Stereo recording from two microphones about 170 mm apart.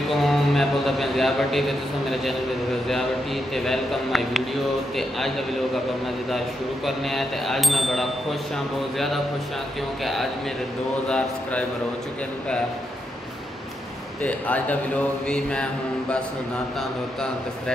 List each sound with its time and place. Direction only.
0.1 s a man's voice: centre (ahead or behind)
3.5 s a man's voice: centre (ahead or behind)
14.2 s a man's voice: 10° left (ahead or behind)